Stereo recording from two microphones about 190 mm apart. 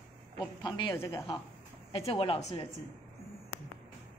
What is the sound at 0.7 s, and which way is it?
A woman's voice, 25° left (ahead or behind).